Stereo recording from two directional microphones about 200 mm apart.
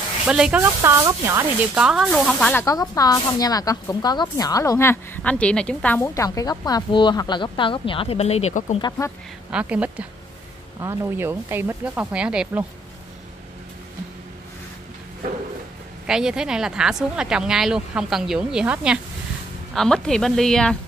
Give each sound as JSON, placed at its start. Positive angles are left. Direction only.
{"t": 0.3, "sound": "speech", "side_deg": -5}
{"t": 2.6, "sound": "a woman's voice", "side_deg": 15}
{"t": 8.8, "sound": "speech", "side_deg": 15}
{"t": 9.5, "sound": "speech", "side_deg": -5}
{"t": 16.1, "sound": "speech", "side_deg": -5}